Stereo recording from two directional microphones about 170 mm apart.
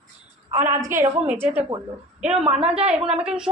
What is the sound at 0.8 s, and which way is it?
A woman's voice, 15° right (ahead or behind).